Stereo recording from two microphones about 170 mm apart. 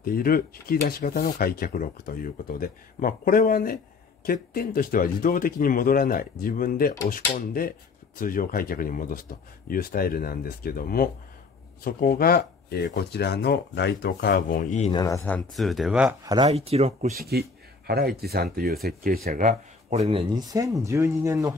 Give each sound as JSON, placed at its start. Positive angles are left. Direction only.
{"t": 0.0, "sound": "speech", "side_deg": 60}
{"t": 14.9, "sound": "speech", "side_deg": 20}
{"t": 15.2, "sound": "speech", "side_deg": 5}
{"t": 16.4, "sound": "speech", "side_deg": -35}
{"t": 17.2, "sound": "speech", "side_deg": -65}
{"t": 19.2, "sound": "speech", "side_deg": -50}
{"t": 19.9, "sound": "speech", "side_deg": -35}